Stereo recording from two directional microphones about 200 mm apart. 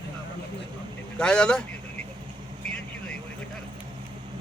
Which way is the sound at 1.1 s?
5° left (ahead or behind).